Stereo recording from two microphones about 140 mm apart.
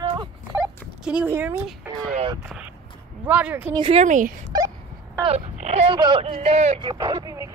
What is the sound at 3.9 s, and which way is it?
Speech, 65° right (ahead or behind).